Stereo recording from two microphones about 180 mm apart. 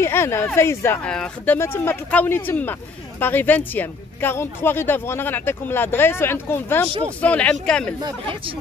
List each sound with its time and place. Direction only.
0.0 s a woman's voice: 15° left (ahead or behind)
8.0 s speech: 30° right (ahead or behind)